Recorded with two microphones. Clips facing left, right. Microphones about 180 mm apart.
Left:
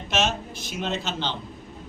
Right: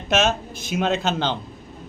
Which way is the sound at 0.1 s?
50° right (ahead or behind).